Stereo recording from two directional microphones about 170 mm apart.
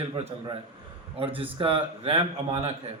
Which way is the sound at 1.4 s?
30° right (ahead or behind).